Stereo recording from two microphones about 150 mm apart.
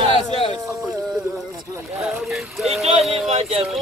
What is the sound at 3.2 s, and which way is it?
Speech, 45° right (ahead or behind).